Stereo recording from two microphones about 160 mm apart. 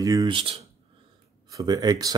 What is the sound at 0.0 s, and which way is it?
Speech, 20° right (ahead or behind).